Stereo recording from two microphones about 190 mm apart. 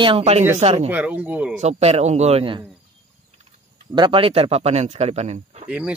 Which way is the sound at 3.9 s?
25° right (ahead or behind).